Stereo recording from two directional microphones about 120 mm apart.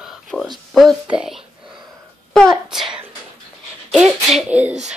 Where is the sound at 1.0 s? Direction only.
5° right (ahead or behind).